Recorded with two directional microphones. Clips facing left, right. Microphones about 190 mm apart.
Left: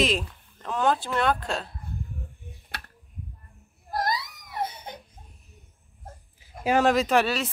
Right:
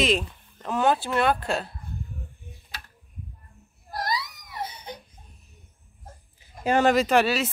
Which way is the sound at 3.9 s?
50° left (ahead or behind).